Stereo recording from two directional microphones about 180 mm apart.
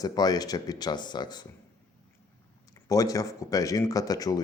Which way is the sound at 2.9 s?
20° left (ahead or behind).